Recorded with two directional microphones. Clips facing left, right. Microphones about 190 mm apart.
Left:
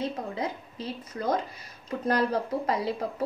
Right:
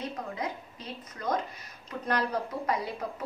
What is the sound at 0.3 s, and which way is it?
A woman's voice, 30° left (ahead or behind).